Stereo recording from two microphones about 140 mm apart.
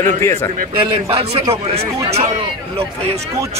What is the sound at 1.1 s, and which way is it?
A man's voice, 40° right (ahead or behind).